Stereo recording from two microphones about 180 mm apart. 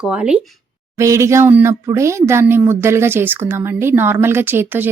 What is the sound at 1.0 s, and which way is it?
Speech, 15° right (ahead or behind).